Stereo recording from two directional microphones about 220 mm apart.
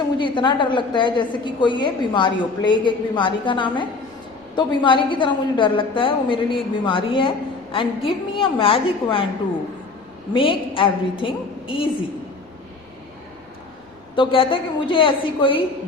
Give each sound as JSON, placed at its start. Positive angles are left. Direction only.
{"t": 0.2, "sound": "a woman's voice", "side_deg": 20}
{"t": 10.3, "sound": "a woman's voice", "side_deg": 25}
{"t": 14.2, "sound": "a woman's voice", "side_deg": 25}